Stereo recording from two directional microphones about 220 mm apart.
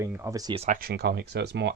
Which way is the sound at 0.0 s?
10° right (ahead or behind).